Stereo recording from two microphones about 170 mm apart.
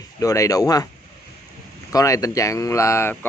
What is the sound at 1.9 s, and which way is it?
A man's voice, 20° left (ahead or behind).